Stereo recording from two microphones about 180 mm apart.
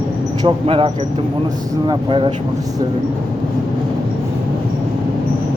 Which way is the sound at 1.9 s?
30° right (ahead or behind).